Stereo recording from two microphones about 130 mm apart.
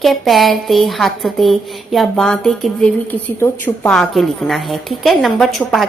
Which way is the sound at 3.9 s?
5° left (ahead or behind).